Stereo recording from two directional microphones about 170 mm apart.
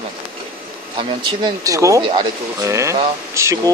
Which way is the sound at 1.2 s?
20° right (ahead or behind).